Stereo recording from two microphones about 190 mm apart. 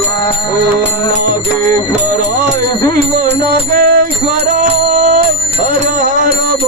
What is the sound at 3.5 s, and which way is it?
Music, 50° right (ahead or behind).